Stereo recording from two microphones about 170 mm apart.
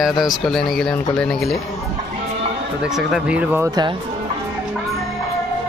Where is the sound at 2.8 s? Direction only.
5° right (ahead or behind).